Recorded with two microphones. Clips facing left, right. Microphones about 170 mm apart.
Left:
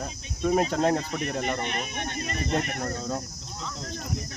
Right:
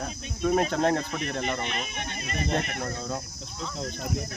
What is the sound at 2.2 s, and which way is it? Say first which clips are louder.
Speech: even; 45° left (ahead or behind).